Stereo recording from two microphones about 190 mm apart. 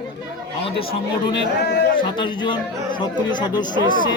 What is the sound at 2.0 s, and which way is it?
A man's voice, 25° left (ahead or behind).